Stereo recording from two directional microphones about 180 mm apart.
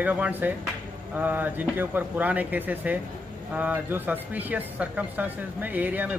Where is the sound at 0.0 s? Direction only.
10° right (ahead or behind).